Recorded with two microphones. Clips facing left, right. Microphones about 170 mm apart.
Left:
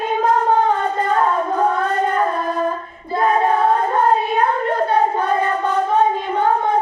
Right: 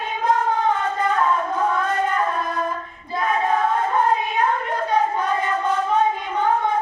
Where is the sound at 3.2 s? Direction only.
35° left (ahead or behind).